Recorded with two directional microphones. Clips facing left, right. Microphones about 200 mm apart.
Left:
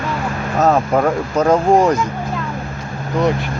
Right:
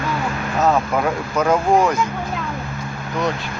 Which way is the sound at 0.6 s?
40° left (ahead or behind).